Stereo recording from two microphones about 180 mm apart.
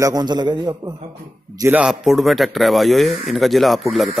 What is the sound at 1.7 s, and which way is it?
A man's voice, centre (ahead or behind).